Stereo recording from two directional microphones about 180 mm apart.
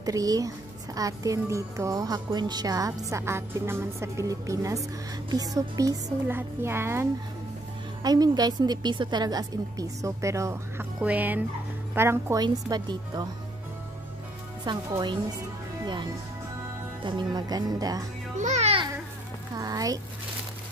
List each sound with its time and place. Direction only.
0.0 s speech: 20° right (ahead or behind)
14.6 s speech: 20° right (ahead or behind)
18.4 s babbling: 40° right (ahead or behind)
19.5 s a sound: 20° right (ahead or behind)